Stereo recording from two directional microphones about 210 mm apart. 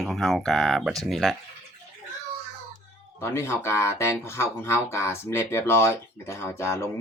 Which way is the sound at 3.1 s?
10° left (ahead or behind).